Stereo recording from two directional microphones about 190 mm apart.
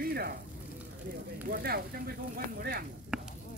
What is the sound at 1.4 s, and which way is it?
Speech, 50° right (ahead or behind).